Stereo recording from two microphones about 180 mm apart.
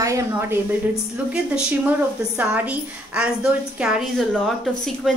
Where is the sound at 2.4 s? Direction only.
10° right (ahead or behind).